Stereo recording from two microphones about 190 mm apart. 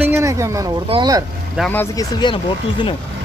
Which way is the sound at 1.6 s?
10° left (ahead or behind).